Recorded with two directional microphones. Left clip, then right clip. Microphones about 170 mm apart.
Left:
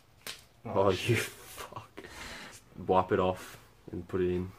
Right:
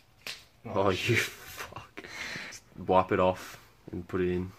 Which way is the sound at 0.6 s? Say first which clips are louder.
Even; 15° right (ahead or behind).